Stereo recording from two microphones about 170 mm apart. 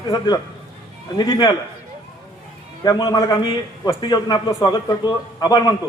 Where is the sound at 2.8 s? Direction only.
20° left (ahead or behind).